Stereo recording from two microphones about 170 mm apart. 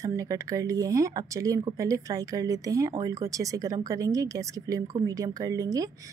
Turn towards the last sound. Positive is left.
turn(degrees=-20)  # may be behind; listen again after turning